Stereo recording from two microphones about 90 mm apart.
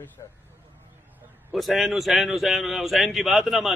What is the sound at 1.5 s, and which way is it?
A man's voice, centre (ahead or behind).